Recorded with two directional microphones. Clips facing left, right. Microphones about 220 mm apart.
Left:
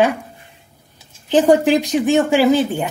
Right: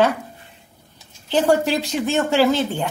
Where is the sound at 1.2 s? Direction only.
15° left (ahead or behind).